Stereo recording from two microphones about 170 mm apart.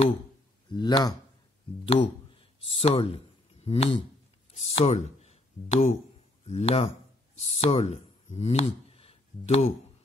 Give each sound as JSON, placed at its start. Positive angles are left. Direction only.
{"t": 0.7, "sound": "speech", "side_deg": 25}
{"t": 3.6, "sound": "a sound", "side_deg": 35}
{"t": 4.6, "sound": "speech", "side_deg": 40}